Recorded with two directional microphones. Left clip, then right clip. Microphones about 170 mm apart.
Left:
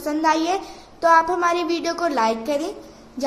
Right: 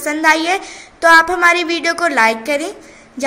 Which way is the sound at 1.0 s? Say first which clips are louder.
Right 7 dB; 35° right (ahead or behind).